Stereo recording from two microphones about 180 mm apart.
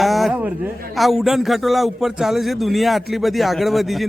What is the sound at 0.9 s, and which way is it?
A man's voice, centre (ahead or behind).